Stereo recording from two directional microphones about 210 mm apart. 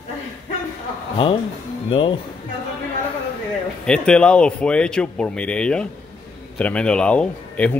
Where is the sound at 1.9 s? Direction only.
25° left (ahead or behind).